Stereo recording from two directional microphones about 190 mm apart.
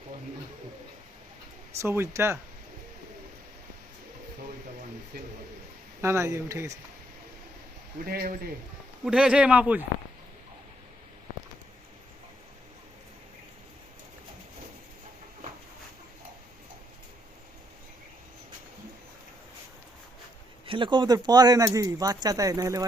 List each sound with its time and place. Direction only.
1.8 s speech: 15° right (ahead or behind)
5.1 s a sound: 55° right (ahead or behind)
6.0 s speech: 15° right (ahead or behind)
8.0 s speech: 50° right (ahead or behind)
9.0 s speech: 5° right (ahead or behind)
20.7 s speech: 25° right (ahead or behind)